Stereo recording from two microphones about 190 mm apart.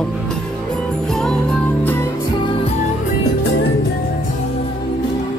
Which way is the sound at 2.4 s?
30° left (ahead or behind).